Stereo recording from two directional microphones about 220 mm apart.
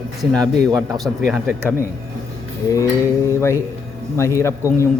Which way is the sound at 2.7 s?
15° left (ahead or behind).